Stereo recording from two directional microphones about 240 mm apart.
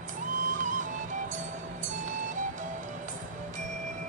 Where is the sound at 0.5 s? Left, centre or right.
Right.